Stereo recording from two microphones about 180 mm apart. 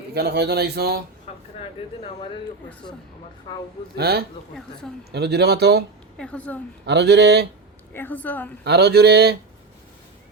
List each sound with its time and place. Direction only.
0.1 s speech: 65° right (ahead or behind)
1.5 s speech: 35° left (ahead or behind)
3.5 s a man's voice: 25° left (ahead or behind)
3.9 s speech: 60° right (ahead or behind)
6.1 s a woman's voice: 5° left (ahead or behind)
6.8 s speech: 65° right (ahead or behind)
7.9 s a woman's voice: 10° left (ahead or behind)
8.6 s speech: 65° right (ahead or behind)